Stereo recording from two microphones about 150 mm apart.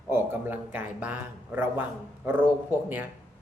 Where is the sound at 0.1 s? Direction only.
15° right (ahead or behind).